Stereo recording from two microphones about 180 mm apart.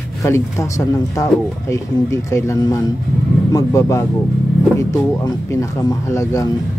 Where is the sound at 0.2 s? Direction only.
15° left (ahead or behind).